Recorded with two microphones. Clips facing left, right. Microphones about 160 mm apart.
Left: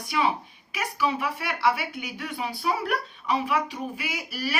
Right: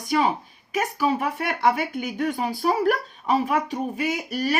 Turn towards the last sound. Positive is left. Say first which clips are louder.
# right 7 dB
turn(degrees=-45)  # may be behind; listen again after turning